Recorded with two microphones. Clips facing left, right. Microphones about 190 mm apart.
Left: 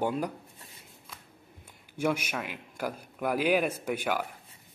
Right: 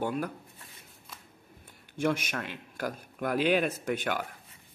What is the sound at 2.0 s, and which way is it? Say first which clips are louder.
Speech: even; 10° left (ahead or behind).